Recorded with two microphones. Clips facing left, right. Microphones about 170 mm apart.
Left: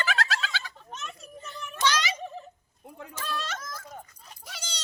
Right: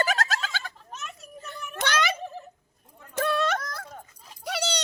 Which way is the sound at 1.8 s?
55° right (ahead or behind).